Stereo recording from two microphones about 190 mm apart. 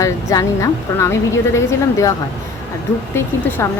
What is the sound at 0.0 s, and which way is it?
Speech, 15° left (ahead or behind).